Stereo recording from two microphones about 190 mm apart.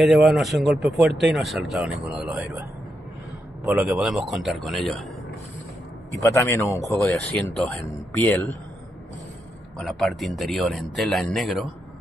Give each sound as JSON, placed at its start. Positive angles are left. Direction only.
{"t": 0.0, "sound": "a man's voice", "side_deg": 0}
{"t": 3.7, "sound": "speech", "side_deg": -10}
{"t": 6.2, "sound": "speech", "side_deg": 15}
{"t": 9.8, "sound": "speech", "side_deg": 0}